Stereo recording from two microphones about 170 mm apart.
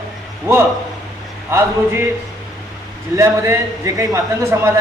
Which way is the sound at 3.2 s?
15° right (ahead or behind).